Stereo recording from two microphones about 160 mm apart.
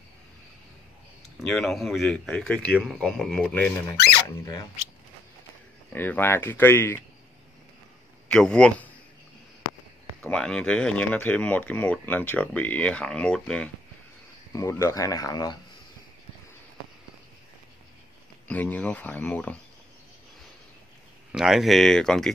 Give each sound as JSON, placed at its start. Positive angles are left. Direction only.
{"t": 1.4, "sound": "speech", "side_deg": 0}
{"t": 4.4, "sound": "speech", "side_deg": 20}
{"t": 5.9, "sound": "speech", "side_deg": 10}
{"t": 8.3, "sound": "speech", "side_deg": 5}
{"t": 10.2, "sound": "speech", "side_deg": 5}
{"t": 14.5, "sound": "speech", "side_deg": 20}
{"t": 18.5, "sound": "speech", "side_deg": 10}
{"t": 21.3, "sound": "speech", "side_deg": -5}